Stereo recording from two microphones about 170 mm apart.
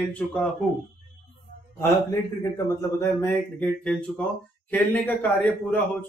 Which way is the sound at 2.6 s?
15° left (ahead or behind).